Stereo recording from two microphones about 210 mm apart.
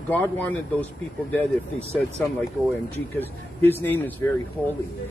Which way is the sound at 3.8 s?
10° left (ahead or behind).